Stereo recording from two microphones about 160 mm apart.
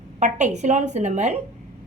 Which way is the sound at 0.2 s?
50° right (ahead or behind).